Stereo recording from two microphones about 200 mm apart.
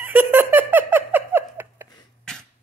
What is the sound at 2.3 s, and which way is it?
Beatboxing, 5° left (ahead or behind).